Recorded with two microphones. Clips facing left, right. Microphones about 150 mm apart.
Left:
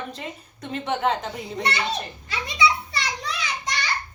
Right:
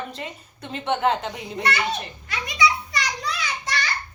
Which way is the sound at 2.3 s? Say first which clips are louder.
Even; 25° left (ahead or behind).